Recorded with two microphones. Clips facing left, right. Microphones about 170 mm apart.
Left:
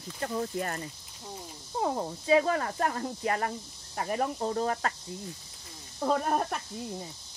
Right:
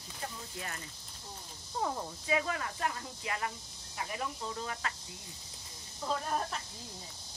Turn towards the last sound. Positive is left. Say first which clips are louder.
# left 7 dB
turn(degrees=60)  # may be behind; listen again after turning